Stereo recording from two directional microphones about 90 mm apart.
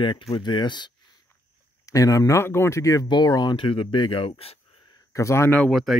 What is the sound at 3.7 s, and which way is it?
Speech, 75° left (ahead or behind).